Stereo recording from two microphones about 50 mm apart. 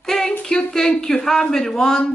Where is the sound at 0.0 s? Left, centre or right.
Centre.